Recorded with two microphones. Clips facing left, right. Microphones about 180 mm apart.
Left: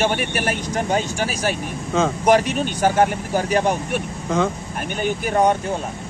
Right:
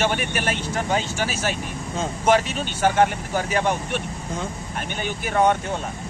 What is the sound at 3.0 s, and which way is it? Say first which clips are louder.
Speech: left 2 dB; 45° left (ahead or behind).